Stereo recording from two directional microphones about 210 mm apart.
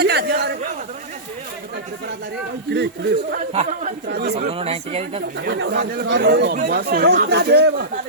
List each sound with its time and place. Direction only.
0.0 s a sound: 50° right (ahead or behind)
2.6 s speech: 55° right (ahead or behind)
3.5 s speech: 30° right (ahead or behind)
4.1 s speech: 50° right (ahead or behind)
4.4 s speech: 30° right (ahead or behind)
5.4 s speech: 55° right (ahead or behind)